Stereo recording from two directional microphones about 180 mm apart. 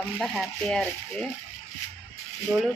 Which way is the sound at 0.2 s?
Centre (ahead or behind).